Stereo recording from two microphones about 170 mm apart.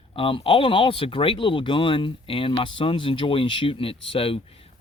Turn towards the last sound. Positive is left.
turn(degrees=35)  # may be behind; listen again after turning